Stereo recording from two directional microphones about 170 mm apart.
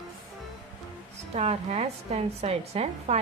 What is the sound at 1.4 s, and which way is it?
A woman's voice, 40° right (ahead or behind).